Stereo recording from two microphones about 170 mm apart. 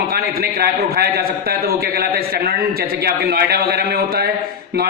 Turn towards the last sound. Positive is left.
turn(degrees=-70)  # may be behind; listen again after turning